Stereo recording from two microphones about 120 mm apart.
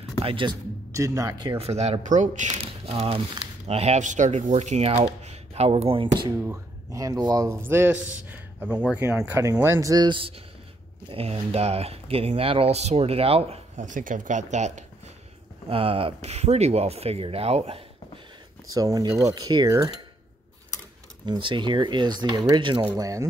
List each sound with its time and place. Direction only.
0.2 s speech: 45° right (ahead or behind)
0.9 s speech: 25° right (ahead or behind)
1.6 s speech: 65° right (ahead or behind)
6.4 s speech: 25° right (ahead or behind)
7.4 s speech: 20° right (ahead or behind)
9.4 s speech: 25° right (ahead or behind); by 13.6 s 55° right (ahead or behind)
13.7 s speech: 90° right
15.7 s speech: 50° right (ahead or behind)
18.7 s speech: 30° right (ahead or behind)
21.3 s speech: 40° right (ahead or behind)
22.9 s speech: 30° right (ahead or behind)